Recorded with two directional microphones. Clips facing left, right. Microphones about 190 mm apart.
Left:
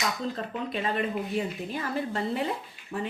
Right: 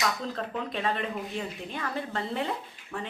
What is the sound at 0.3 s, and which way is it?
Speech, 5° left (ahead or behind).